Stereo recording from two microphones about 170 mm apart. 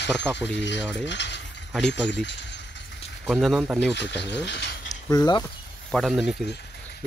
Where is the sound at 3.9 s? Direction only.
90° left.